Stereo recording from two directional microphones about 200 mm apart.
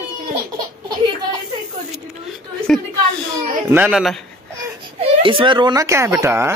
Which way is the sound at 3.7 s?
5° right (ahead or behind).